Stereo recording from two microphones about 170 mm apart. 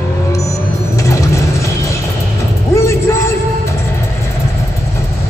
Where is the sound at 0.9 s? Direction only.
20° left (ahead or behind).